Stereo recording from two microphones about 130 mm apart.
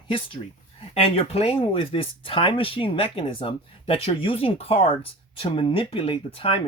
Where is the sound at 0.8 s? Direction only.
50° left (ahead or behind).